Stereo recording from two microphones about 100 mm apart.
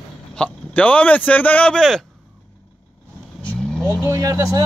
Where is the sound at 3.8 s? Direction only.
30° right (ahead or behind).